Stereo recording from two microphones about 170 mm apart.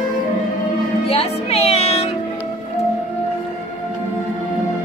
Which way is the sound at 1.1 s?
35° left (ahead or behind).